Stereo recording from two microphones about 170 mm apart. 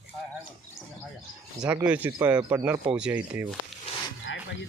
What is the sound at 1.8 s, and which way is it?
Speech, 10° right (ahead or behind).